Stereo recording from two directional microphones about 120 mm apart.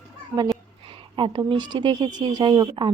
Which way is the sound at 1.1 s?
45° right (ahead or behind).